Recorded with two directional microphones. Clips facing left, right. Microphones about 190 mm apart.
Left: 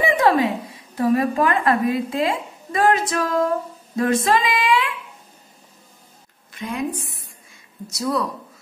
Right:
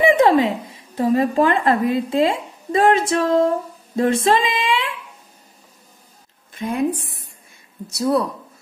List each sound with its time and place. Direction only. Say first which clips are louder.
0.0 s a sound: right 3 dB; 25° right (ahead or behind)
0.9 s speech: right 2 dB; 25° right (ahead or behind)
6.6 s a woman's voice: right 5 dB; 55° right (ahead or behind)
8.0 s speech: right 4 dB; 35° right (ahead or behind)